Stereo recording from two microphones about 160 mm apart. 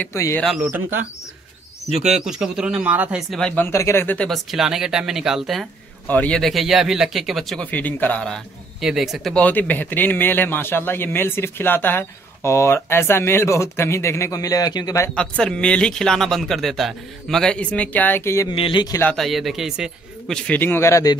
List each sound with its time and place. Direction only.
0.0 s speech: 15° left (ahead or behind)
0.4 s speech: centre (ahead or behind)
0.7 s speech: 10° right (ahead or behind)
2.1 s speech: 5° right (ahead or behind)
6.0 s speech: 10° left (ahead or behind); by 15.0 s 25° left (ahead or behind)
15.1 s speech: 5° left (ahead or behind)
18.5 s speech: 30° left (ahead or behind)
19.1 s speech: centre (ahead or behind); by 21.2 s 20° left (ahead or behind)